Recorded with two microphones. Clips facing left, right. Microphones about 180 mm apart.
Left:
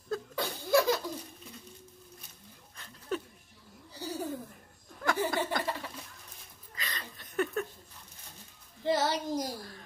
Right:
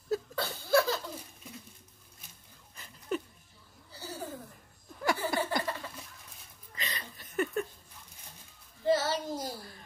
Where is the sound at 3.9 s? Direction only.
15° left (ahead or behind).